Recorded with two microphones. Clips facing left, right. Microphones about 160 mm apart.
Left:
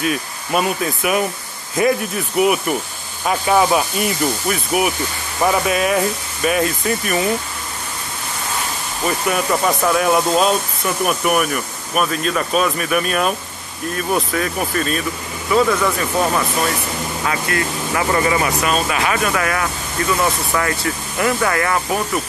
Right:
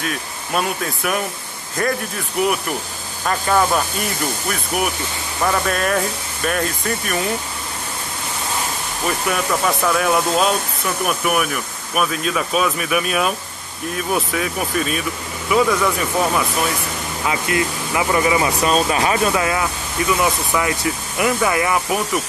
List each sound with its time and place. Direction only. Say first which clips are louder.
0.0 s speech: left 5 dB; 5° left (ahead or behind)
2.4 s speech: left 4 dB; 5° left (ahead or behind)
9.0 s speech: left 2 dB; centre (ahead or behind)
17.3 s speech: right 2 dB; 20° right (ahead or behind)
18.6 s speech: right 2 dB; 30° right (ahead or behind); by 22.0 s 15° right (ahead or behind)